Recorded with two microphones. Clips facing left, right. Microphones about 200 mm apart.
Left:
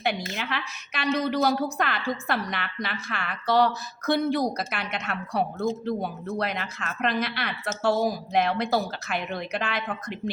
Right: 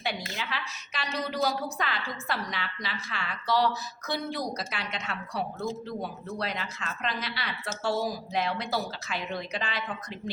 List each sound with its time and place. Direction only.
0.0 s a woman's voice: 55° left (ahead or behind)